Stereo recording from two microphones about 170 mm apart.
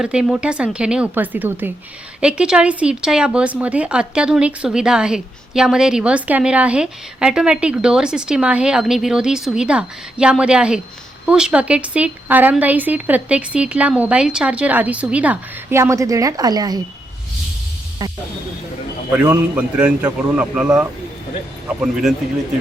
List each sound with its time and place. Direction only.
0.0 s a woman's voice: 5° right (ahead or behind); by 16.8 s 25° right (ahead or behind)
18.0 s speech: 20° right (ahead or behind)
19.1 s speech: 10° right (ahead or behind)